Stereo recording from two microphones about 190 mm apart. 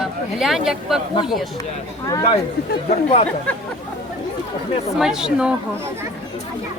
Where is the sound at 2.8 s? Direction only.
35° left (ahead or behind).